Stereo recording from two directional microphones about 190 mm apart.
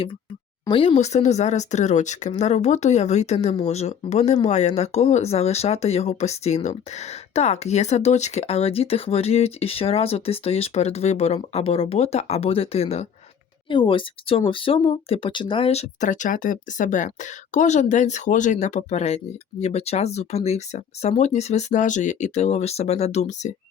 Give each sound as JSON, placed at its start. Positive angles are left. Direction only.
{"t": 0.6, "sound": "speech", "side_deg": 25}